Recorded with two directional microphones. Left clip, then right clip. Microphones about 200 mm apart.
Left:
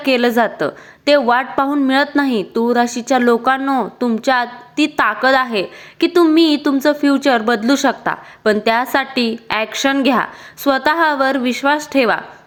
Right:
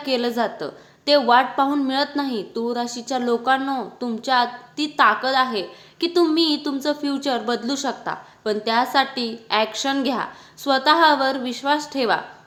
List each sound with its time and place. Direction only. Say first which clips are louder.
0.0 s a woman's voice: left 8 dB; 35° left (ahead or behind)